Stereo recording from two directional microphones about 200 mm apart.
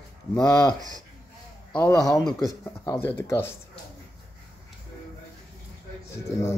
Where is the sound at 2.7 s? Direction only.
10° left (ahead or behind).